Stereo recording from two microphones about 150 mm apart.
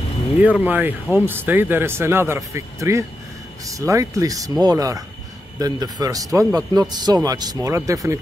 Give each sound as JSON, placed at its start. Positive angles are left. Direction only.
{"t": 0.4, "sound": "speech", "side_deg": -10}